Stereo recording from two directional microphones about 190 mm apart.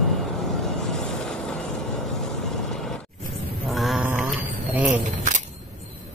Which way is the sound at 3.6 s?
Centre (ahead or behind).